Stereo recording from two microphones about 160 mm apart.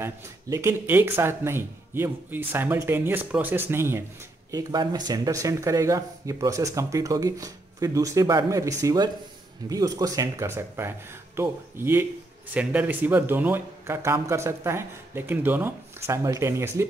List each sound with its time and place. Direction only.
0.0 s speech: 15° right (ahead or behind)